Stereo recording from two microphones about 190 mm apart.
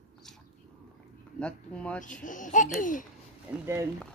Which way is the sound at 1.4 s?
5° left (ahead or behind).